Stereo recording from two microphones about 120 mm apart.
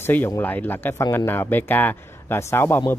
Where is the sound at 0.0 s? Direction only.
15° left (ahead or behind).